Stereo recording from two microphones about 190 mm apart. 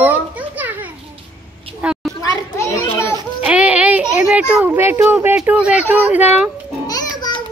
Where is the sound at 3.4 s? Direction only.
5° right (ahead or behind).